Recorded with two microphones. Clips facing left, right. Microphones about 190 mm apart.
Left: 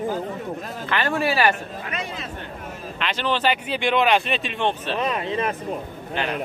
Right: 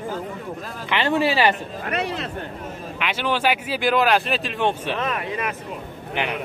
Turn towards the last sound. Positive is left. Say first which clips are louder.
# right 1 dB
turn(degrees=-15)  # may be behind; listen again after turning